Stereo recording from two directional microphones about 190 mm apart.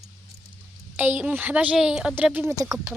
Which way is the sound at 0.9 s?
10° right (ahead or behind).